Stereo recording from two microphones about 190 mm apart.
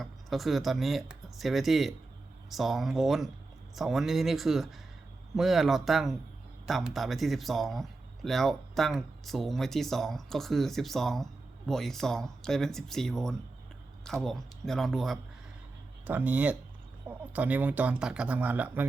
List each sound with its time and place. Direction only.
0.0 s speech: centre (ahead or behind)